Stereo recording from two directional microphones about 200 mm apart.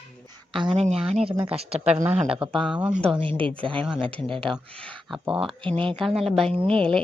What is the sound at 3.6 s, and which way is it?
Speech, 25° right (ahead or behind).